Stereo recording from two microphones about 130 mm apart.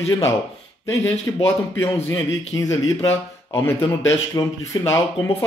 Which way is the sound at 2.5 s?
25° left (ahead or behind).